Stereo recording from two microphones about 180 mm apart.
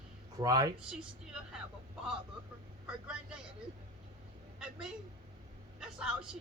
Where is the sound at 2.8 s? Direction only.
5° right (ahead or behind).